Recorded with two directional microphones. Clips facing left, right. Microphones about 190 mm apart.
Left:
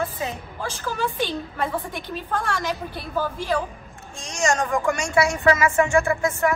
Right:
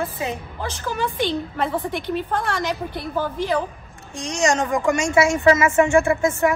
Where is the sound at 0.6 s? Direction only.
15° right (ahead or behind).